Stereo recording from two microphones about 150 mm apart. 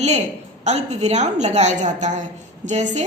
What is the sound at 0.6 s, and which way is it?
A woman's voice, 50° right (ahead or behind).